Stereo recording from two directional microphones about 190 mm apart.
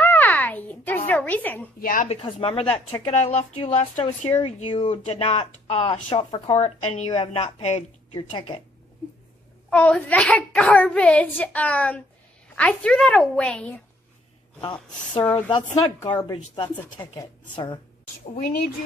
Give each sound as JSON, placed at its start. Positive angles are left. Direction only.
{"t": 0.0, "sound": "a sound", "side_deg": 10}
{"t": 1.8, "sound": "a woman's voice", "side_deg": 45}
{"t": 2.0, "sound": "speech", "side_deg": 30}
{"t": 9.7, "sound": "a child's voice", "side_deg": 5}
{"t": 14.6, "sound": "speech", "side_deg": 25}